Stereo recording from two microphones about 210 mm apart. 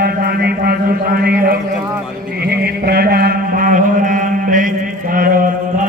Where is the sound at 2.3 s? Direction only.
50° right (ahead or behind).